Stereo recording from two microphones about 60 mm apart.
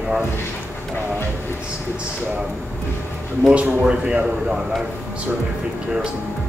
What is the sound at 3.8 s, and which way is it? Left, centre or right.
Speech, centre.